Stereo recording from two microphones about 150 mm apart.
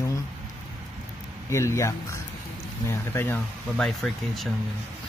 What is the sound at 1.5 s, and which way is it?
Speech, 20° left (ahead or behind).